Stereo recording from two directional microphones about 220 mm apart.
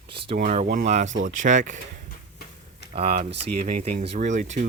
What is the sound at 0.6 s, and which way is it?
Speech, 45° right (ahead or behind).